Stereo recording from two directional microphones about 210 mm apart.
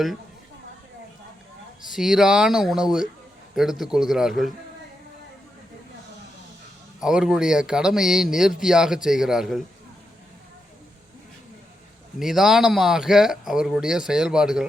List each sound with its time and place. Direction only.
1.9 s speech: centre (ahead or behind)
7.0 s speech: 5° right (ahead or behind)
12.2 s speech: centre (ahead or behind)